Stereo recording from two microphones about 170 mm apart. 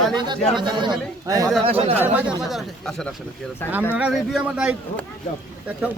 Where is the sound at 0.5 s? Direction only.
25° right (ahead or behind).